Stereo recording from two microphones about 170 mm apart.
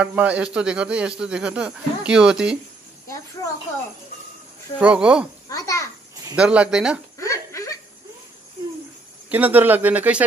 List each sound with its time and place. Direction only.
0.0 s speech: 5° right (ahead or behind)
4.7 s speech: 5° right (ahead or behind)
5.5 s a child's voice: 20° left (ahead or behind)
6.3 s speech: 5° right (ahead or behind)
7.2 s laughter: 20° left (ahead or behind)
9.3 s speech: 10° right (ahead or behind)